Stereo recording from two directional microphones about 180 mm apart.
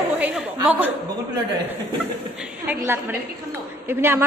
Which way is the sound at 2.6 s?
10° right (ahead or behind).